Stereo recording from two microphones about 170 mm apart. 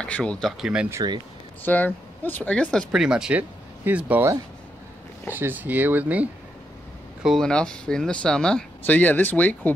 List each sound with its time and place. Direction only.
0.0 s speech: 5° left (ahead or behind)
0.9 s speech: 25° right (ahead or behind)
1.6 s speech: 10° left (ahead or behind); by 6.2 s 10° right (ahead or behind)
7.2 s speech: 5° left (ahead or behind)